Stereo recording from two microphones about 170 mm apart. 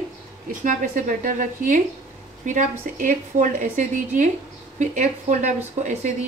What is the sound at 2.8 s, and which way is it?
Speech, 50° right (ahead or behind).